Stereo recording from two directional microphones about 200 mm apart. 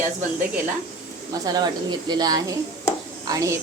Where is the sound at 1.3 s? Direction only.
20° right (ahead or behind).